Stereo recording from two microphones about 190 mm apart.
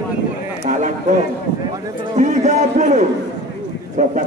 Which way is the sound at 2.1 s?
40° right (ahead or behind).